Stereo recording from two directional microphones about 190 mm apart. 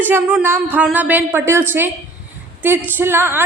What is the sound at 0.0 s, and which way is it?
A woman's voice, 10° right (ahead or behind).